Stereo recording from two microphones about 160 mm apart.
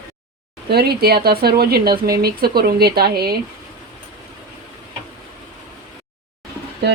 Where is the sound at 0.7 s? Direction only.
80° right.